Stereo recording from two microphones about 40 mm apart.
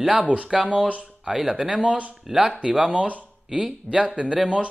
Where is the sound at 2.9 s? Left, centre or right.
Right.